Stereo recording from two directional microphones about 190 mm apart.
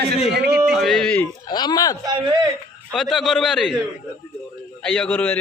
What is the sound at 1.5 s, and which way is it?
Speech, 20° left (ahead or behind).